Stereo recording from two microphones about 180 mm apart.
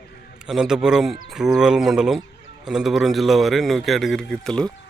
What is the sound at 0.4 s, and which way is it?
A man's voice, 5° right (ahead or behind).